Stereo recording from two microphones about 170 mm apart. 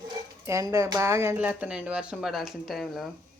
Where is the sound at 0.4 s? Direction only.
15° right (ahead or behind); by 3.1 s centre (ahead or behind).